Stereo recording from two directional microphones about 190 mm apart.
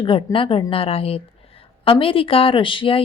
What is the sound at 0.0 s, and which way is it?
Speech, 25° left (ahead or behind).